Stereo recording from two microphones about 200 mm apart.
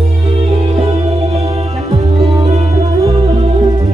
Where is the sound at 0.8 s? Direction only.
30° right (ahead or behind).